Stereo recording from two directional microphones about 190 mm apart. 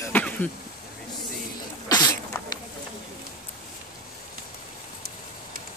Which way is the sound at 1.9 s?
20° left (ahead or behind).